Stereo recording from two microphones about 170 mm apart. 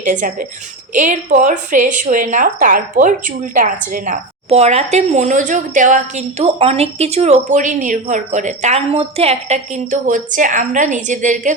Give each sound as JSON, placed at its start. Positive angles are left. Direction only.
{"t": 0.0, "sound": "a woman's voice", "side_deg": -50}
{"t": 4.4, "sound": "a woman's voice", "side_deg": -40}